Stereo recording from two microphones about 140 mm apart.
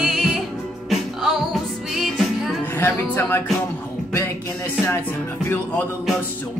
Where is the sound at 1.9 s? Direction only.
Centre (ahead or behind).